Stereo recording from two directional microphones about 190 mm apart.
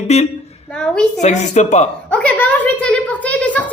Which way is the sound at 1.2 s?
40° left (ahead or behind).